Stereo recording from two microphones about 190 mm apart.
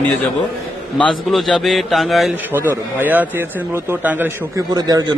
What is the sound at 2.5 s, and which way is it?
Speech, 10° right (ahead or behind).